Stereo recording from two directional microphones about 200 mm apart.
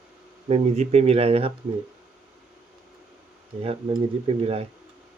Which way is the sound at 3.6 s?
30° right (ahead or behind).